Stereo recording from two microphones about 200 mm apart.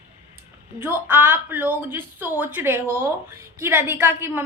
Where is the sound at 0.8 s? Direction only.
10° right (ahead or behind).